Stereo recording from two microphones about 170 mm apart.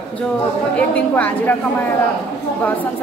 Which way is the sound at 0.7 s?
5° left (ahead or behind).